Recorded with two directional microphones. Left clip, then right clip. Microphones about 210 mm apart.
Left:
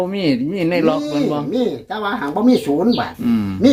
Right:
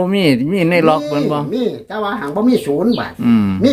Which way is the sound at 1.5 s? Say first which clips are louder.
Even; 5° right (ahead or behind).